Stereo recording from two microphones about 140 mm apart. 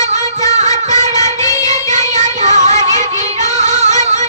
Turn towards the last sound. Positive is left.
turn(degrees=-55)  # may be behind; listen again after turning